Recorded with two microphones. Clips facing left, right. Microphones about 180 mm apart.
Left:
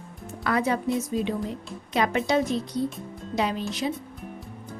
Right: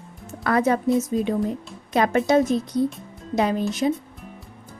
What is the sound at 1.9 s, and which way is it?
Speech, 45° right (ahead or behind).